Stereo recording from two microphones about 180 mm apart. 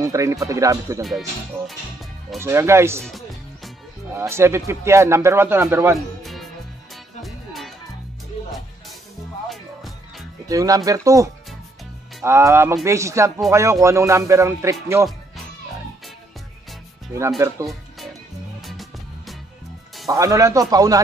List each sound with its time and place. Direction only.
0.0 s speech: 15° right (ahead or behind)
2.4 s speech: 15° right (ahead or behind)
3.0 s music: centre (ahead or behind)
4.2 s speech: 15° right (ahead or behind)
5.9 s music: centre (ahead or behind)
9.5 s music: centre (ahead or behind)
10.5 s speech: 20° right (ahead or behind)
17.6 s music: centre (ahead or behind)
20.1 s speech: 20° right (ahead or behind)